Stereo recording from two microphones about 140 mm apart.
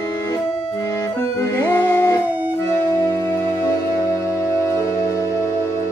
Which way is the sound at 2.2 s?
10° right (ahead or behind).